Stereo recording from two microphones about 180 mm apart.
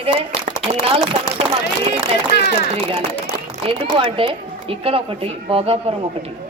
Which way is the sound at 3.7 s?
30° right (ahead or behind).